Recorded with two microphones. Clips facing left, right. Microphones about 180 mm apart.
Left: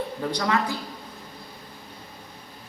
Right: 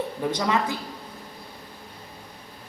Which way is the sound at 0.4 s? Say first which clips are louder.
Left 1 dB; 20° right (ahead or behind).